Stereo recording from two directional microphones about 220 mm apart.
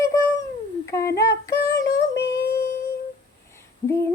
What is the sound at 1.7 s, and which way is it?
Synthetic singing, 50° left (ahead or behind).